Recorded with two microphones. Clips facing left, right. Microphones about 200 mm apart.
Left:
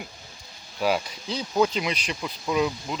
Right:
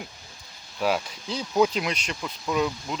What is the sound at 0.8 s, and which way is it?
Speech, centre (ahead or behind).